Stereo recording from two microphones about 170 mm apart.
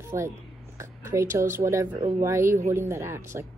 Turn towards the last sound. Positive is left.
turn(degrees=-15)  # may be behind; listen again after turning